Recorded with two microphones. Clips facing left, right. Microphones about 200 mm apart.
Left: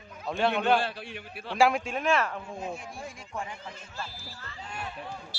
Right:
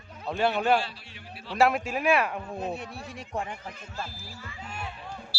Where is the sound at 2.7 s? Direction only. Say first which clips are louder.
Right 2 dB; 65° right (ahead or behind).